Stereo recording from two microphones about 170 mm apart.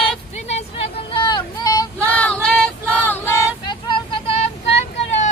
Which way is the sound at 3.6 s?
30° left (ahead or behind).